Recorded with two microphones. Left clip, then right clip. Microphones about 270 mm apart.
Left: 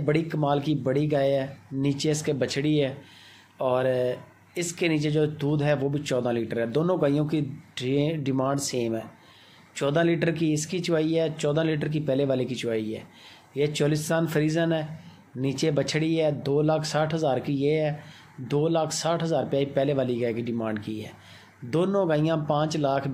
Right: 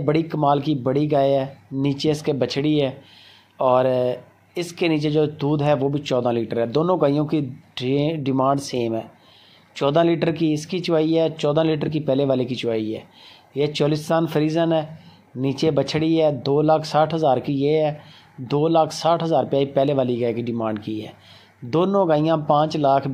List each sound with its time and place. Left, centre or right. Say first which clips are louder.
0.0 s speech: right 6 dB; centre